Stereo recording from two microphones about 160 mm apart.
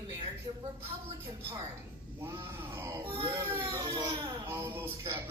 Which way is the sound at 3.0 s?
35° right (ahead or behind).